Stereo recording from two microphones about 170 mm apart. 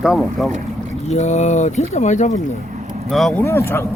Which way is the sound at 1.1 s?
40° left (ahead or behind).